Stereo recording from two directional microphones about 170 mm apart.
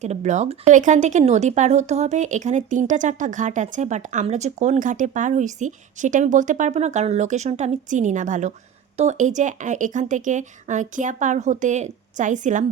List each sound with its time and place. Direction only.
0.0 s speech: 45° right (ahead or behind)